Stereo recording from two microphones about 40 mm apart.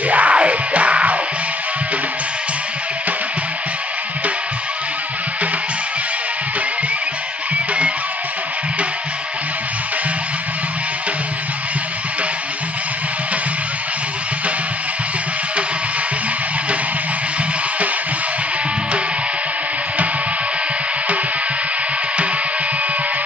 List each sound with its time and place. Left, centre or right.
0.1 s music: right